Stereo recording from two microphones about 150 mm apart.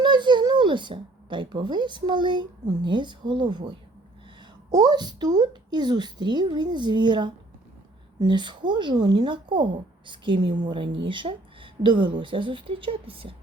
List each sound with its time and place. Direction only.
0.0 s speech: 30° right (ahead or behind)